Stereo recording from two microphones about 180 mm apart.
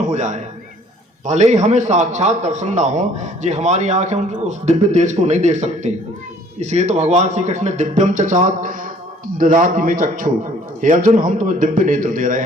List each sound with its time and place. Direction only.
0.0 s a man's voice: 40° right (ahead or behind)